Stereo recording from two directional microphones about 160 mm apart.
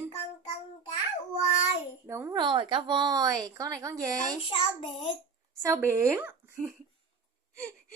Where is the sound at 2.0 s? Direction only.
15° right (ahead or behind).